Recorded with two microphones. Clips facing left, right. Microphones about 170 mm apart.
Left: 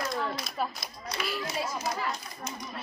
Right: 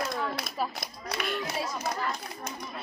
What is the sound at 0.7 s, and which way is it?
Speech, 60° right (ahead or behind).